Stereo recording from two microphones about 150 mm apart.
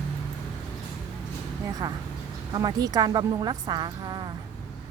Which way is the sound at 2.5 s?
25° right (ahead or behind).